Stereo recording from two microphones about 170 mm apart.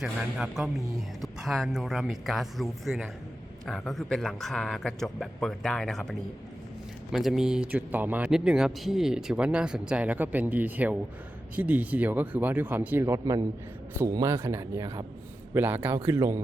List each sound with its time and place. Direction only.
0.0 s speech: 5° right (ahead or behind)